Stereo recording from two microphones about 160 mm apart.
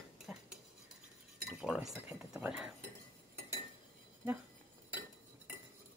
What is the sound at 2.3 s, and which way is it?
Speech, 5° right (ahead or behind).